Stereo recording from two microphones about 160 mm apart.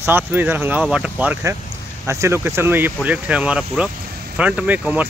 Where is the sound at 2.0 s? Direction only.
20° right (ahead or behind).